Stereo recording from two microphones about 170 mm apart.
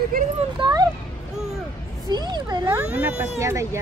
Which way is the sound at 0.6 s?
20° right (ahead or behind).